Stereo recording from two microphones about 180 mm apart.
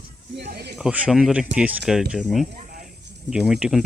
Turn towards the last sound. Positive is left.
turn(degrees=0)  # may be behind; listen again after turning